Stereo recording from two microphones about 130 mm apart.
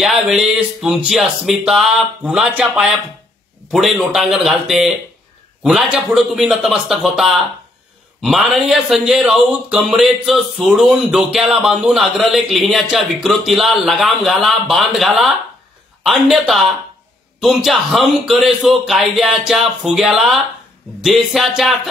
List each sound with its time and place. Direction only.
0.0 s speech: 5° right (ahead or behind)